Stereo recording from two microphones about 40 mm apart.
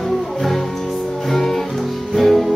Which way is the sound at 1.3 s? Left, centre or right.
Centre.